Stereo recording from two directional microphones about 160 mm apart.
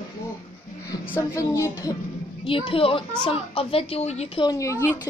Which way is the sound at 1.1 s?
20° left (ahead or behind).